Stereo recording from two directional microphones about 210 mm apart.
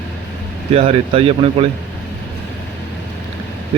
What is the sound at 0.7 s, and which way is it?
Speech, 30° right (ahead or behind).